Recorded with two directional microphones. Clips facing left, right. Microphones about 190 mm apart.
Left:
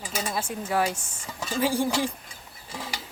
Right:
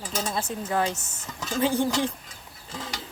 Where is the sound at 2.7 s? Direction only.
5° left (ahead or behind).